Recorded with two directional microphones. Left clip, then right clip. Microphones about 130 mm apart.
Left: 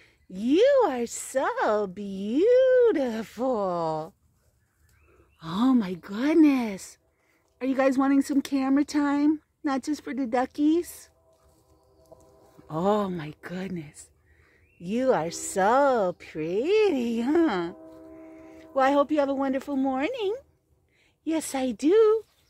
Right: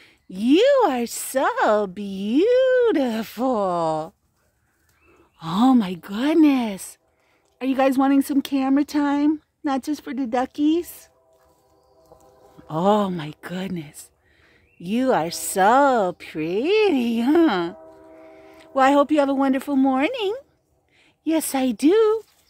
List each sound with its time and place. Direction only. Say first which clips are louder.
0.0 s a woman's voice: right 6 dB; 40° right (ahead or behind)
5.4 s speech: right 6 dB; 45° right (ahead or behind); by 11.1 s 15° right (ahead or behind)
12.6 s a woman's voice: right 6 dB; 35° right (ahead or behind)